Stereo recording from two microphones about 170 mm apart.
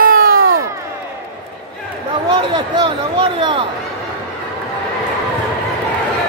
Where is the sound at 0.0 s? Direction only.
60° right (ahead or behind).